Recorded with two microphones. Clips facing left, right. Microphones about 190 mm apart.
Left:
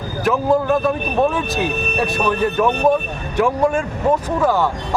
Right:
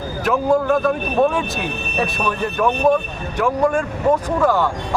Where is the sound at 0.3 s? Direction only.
5° left (ahead or behind).